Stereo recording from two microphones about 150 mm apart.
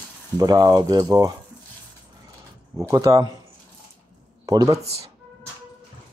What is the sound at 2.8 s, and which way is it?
Speech, 20° right (ahead or behind).